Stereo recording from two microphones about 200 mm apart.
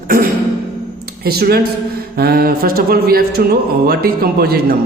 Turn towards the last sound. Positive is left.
turn(degrees=-50)  # may be behind; listen again after turning